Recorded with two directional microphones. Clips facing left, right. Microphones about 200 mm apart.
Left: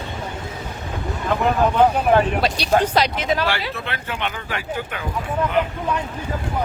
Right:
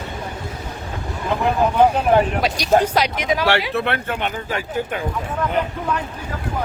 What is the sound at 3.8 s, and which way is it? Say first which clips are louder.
Speech: right 6 dB; 55° right (ahead or behind).